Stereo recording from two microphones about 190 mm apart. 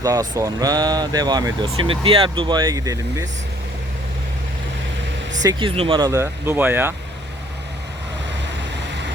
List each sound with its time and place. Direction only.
0.0 s speech: 20° right (ahead or behind)
5.4 s speech: 20° right (ahead or behind)